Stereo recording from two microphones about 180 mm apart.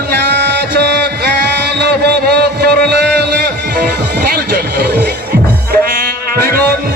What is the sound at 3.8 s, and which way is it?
Music, 60° right (ahead or behind).